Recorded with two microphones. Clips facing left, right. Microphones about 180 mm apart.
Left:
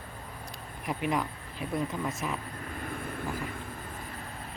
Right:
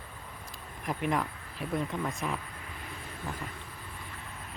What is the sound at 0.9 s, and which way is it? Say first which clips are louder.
Speech: even; centre (ahead or behind).